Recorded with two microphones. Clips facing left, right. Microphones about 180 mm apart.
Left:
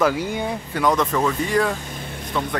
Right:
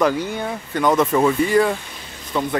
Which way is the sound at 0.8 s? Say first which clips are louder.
Right 4 dB; 5° right (ahead or behind).